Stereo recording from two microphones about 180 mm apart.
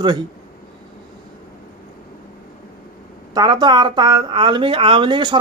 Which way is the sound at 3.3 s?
25° right (ahead or behind).